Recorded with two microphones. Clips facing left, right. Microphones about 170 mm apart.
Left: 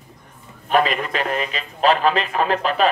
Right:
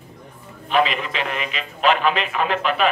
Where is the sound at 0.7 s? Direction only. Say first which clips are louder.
Left 1 dB; 45° left (ahead or behind).